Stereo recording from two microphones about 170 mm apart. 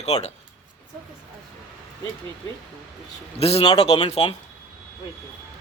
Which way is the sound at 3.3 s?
35° left (ahead or behind).